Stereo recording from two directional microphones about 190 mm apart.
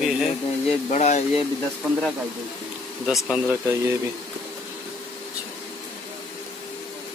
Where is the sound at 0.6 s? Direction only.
35° left (ahead or behind).